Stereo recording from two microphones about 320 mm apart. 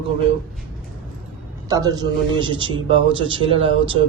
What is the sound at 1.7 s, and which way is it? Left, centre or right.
A woman's voice, centre.